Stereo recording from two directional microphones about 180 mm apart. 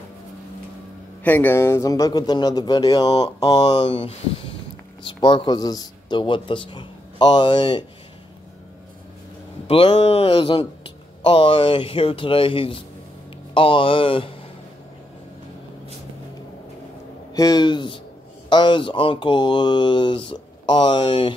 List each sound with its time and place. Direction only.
1.2 s mantra: 10° left (ahead or behind)
3.5 s speech: 35° left (ahead or behind)
5.0 s mantra: 30° left (ahead or behind)
9.7 s speech: 30° left (ahead or behind)
11.2 s mantra: 30° left (ahead or behind)
17.3 s a man's voice: 20° left (ahead or behind)
18.5 s mantra: 25° left (ahead or behind)